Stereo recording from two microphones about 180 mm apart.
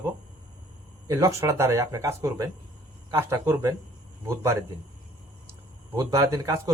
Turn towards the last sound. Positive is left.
turn(degrees=-20)  # may be behind; listen again after turning